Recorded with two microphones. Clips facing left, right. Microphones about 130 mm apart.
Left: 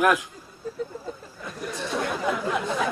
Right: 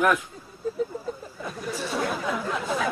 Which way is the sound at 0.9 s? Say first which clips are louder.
Right 3 dB; centre (ahead or behind).